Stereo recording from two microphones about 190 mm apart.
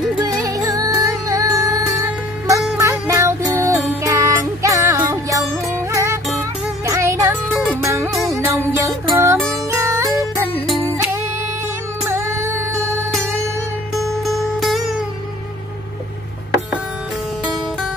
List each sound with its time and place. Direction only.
0.2 s music: 20° right (ahead or behind)
8.1 s music: centre (ahead or behind)
8.5 s music: 15° right (ahead or behind)
12.1 s a sound: 15° right (ahead or behind)
13.9 s music: centre (ahead or behind)